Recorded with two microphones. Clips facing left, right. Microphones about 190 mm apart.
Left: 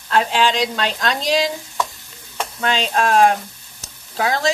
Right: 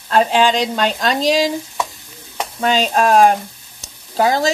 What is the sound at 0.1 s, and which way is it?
Speech, 45° right (ahead or behind).